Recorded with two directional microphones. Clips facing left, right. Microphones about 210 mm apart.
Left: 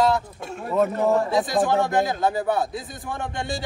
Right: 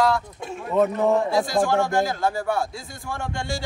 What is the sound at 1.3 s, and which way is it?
A man's voice, 20° left (ahead or behind).